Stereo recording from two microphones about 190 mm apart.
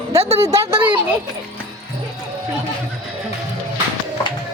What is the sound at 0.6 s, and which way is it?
Speech, 15° right (ahead or behind).